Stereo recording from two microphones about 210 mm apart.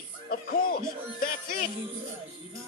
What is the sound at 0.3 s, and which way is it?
Music, 45° left (ahead or behind).